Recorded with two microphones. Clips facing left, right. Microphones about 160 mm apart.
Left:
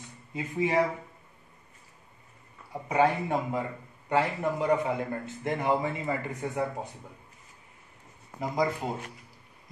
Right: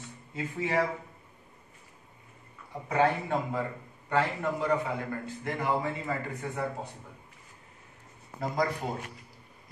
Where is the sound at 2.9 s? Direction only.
15° left (ahead or behind).